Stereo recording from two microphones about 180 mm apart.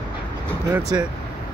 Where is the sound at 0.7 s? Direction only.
20° right (ahead or behind).